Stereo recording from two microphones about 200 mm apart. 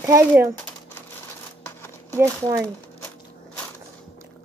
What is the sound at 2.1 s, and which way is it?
Speech, 15° right (ahead or behind).